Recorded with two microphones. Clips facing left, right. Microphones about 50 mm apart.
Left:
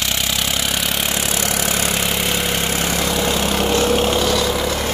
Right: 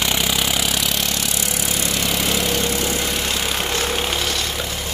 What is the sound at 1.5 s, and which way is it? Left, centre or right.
Vehicle, left.